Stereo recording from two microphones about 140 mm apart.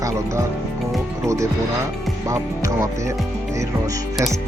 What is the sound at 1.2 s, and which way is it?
Speech, 20° right (ahead or behind).